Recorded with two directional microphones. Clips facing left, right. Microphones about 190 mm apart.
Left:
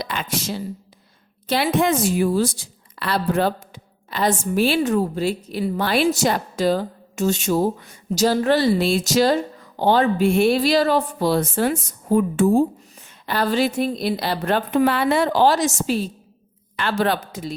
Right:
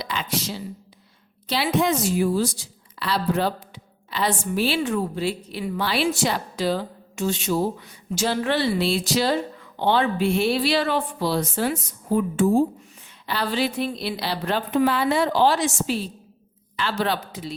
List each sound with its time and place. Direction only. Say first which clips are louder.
0.0 s a woman's voice: left 1 dB; 50° left (ahead or behind)